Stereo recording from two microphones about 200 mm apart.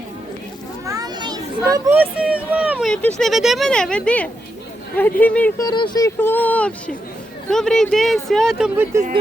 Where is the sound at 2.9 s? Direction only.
5° left (ahead or behind).